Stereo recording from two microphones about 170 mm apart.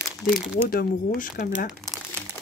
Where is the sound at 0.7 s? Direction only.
60° left (ahead or behind).